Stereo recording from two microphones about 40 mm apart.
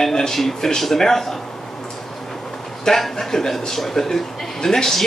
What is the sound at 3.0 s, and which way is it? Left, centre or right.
A man's voice, centre.